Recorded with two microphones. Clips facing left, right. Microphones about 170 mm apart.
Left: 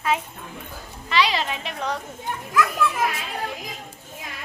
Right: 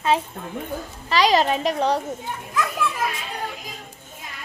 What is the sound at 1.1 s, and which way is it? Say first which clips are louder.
Speech: right 5 dB; 40° right (ahead or behind).